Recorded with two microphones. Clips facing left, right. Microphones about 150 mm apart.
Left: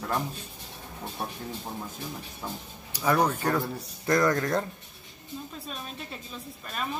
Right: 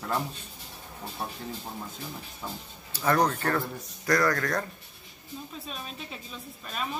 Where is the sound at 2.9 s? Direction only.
10° left (ahead or behind).